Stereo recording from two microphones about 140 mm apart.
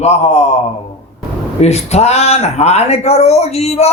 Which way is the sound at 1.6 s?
50° left (ahead or behind).